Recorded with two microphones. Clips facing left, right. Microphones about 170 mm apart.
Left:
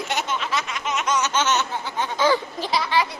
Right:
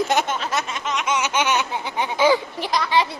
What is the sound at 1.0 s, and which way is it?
Speech, 10° right (ahead or behind).